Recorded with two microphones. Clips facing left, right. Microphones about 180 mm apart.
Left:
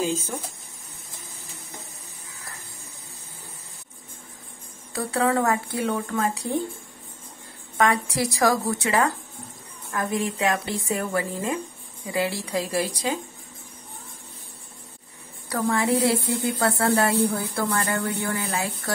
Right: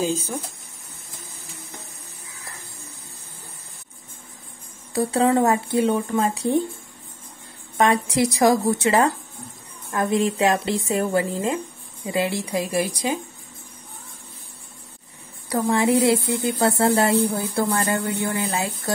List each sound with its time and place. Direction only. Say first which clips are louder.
4.9 s speech: right 4 dB; 20° right (ahead or behind)
7.7 s a woman's voice: right 3 dB; 20° right (ahead or behind)
15.5 s speech: right 3 dB; 20° right (ahead or behind)